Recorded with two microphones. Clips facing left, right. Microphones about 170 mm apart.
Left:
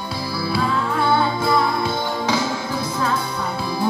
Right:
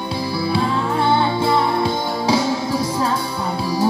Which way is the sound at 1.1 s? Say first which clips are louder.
Right 1 dB; 25° right (ahead or behind).